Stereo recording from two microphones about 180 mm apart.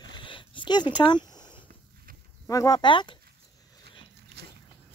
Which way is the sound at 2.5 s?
20° left (ahead or behind).